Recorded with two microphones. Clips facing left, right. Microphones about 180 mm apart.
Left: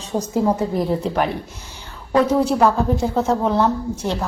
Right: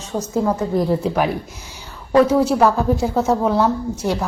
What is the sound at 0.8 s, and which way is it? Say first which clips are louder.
Speech: right 2 dB; centre (ahead or behind).